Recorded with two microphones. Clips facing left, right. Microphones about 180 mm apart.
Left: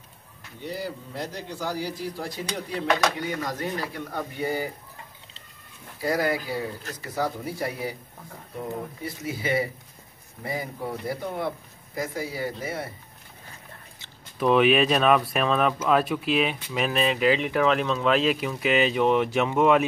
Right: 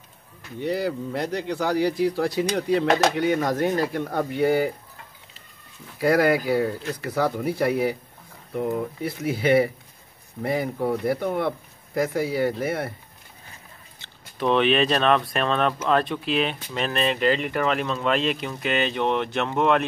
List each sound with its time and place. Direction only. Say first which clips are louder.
0.6 s speech: right 8 dB; 65° right (ahead or behind)
5.9 s speech: right 6 dB; 65° right (ahead or behind)
14.4 s speech: left 1 dB; 5° left (ahead or behind)